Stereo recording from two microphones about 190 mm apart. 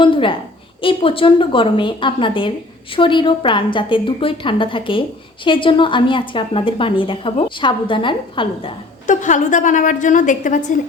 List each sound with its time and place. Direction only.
0.0 s a woman's voice: 25° left (ahead or behind)
9.0 s a woman's voice: 40° left (ahead or behind)